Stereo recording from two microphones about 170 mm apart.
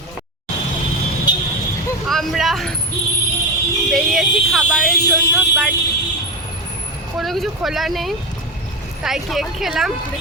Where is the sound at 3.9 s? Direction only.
Centre (ahead or behind).